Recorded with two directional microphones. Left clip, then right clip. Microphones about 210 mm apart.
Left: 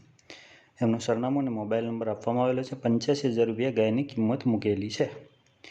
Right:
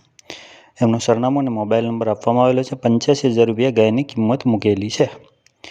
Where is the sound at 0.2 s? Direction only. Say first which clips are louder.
Right 12 dB; 35° right (ahead or behind).